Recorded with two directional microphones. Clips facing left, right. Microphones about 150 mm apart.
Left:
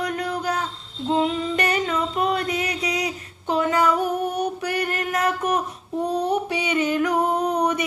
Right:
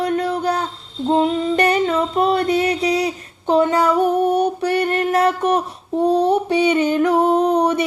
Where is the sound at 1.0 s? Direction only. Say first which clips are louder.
Right 5 dB; 35° right (ahead or behind).